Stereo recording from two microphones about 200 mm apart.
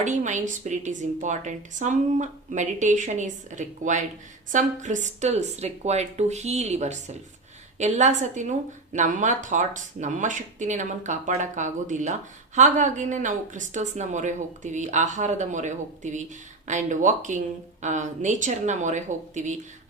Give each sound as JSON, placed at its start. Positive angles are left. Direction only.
{"t": 0.0, "sound": "a woman's voice", "side_deg": -35}